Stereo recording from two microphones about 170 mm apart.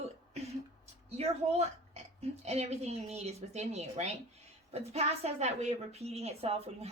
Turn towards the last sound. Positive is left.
turn(degrees=-35)  # may be behind; listen again after turning